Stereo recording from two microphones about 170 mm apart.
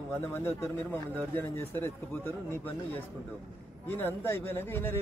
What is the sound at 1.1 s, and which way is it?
A man's voice, 10° left (ahead or behind).